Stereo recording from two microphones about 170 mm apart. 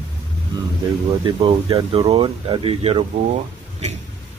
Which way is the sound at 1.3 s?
30° right (ahead or behind).